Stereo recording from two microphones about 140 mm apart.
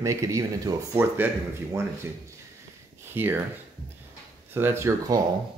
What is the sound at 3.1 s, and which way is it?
Speech, 15° right (ahead or behind).